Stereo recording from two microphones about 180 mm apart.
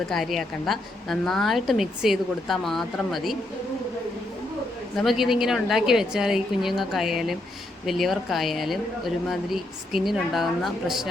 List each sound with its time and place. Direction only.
0.1 s speech: centre (ahead or behind)
4.9 s speech: centre (ahead or behind)